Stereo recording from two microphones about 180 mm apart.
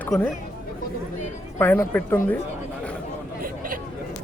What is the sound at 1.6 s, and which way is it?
Speech, 10° left (ahead or behind).